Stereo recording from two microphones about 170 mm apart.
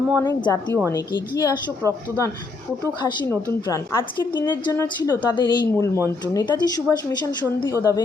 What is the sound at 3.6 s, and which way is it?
A woman's voice, 25° left (ahead or behind).